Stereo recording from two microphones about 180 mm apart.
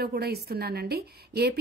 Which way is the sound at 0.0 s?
60° right (ahead or behind).